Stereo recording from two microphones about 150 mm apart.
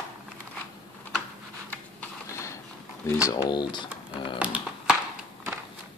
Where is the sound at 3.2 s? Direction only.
25° left (ahead or behind).